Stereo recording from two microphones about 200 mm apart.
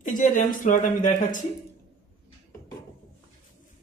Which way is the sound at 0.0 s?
40° left (ahead or behind).